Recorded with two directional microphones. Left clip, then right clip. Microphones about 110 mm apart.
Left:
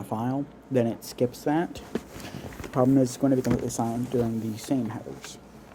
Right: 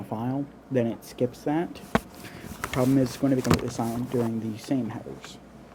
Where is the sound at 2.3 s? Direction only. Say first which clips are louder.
Right 4 dB; 30° left (ahead or behind).